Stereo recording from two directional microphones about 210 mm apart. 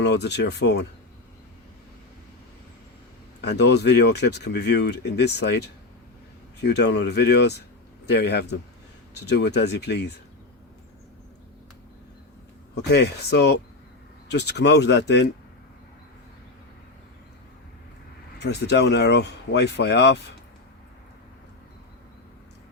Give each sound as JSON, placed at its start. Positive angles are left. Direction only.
{"t": 0.0, "sound": "speech", "side_deg": 55}
{"t": 3.4, "sound": "speech", "side_deg": 55}
{"t": 12.7, "sound": "speech", "side_deg": 50}
{"t": 18.3, "sound": "speech", "side_deg": 50}